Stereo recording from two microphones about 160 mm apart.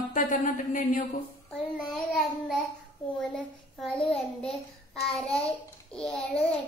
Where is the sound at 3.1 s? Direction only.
5° left (ahead or behind).